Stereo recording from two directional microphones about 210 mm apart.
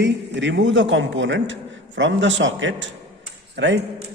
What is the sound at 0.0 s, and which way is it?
A man's voice, 60° right (ahead or behind).